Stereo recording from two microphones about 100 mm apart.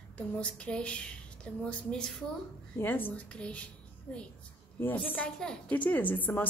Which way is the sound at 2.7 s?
20° left (ahead or behind).